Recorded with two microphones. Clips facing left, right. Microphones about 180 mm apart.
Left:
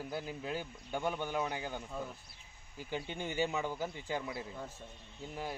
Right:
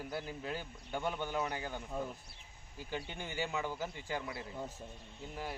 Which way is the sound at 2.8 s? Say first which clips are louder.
Left 3 dB; 15° left (ahead or behind).